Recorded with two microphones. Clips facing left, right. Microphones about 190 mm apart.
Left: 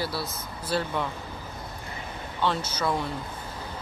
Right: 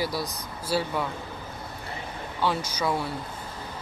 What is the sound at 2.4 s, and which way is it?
Speech, 10° right (ahead or behind).